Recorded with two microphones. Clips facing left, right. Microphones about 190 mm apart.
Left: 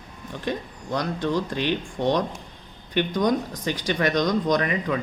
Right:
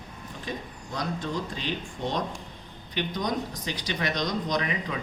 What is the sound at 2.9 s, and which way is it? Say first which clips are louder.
Speech: left 7 dB; 50° left (ahead or behind).